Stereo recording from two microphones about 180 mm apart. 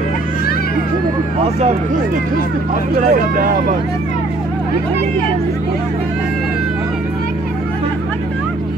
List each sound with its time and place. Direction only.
1.4 s speech: 35° right (ahead or behind)
2.9 s speech: 55° right (ahead or behind)